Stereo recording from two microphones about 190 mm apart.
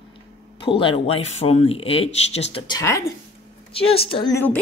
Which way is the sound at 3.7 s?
30° left (ahead or behind).